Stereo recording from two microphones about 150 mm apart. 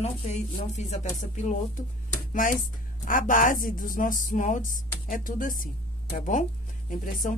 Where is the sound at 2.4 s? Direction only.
65° left (ahead or behind).